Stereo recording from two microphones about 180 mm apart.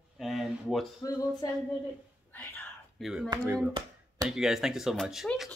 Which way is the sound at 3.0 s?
Centre (ahead or behind).